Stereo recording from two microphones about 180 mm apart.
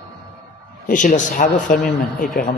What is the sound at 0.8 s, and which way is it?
A man's voice, 45° left (ahead or behind).